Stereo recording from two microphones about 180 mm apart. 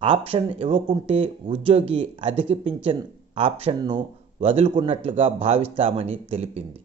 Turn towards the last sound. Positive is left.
turn(degrees=-35)  # may be behind; listen again after turning